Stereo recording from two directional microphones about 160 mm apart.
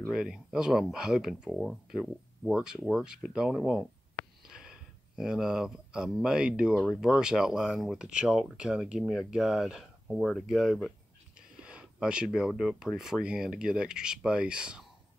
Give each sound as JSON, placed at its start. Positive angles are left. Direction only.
{"t": 0.1, "sound": "speech", "side_deg": -5}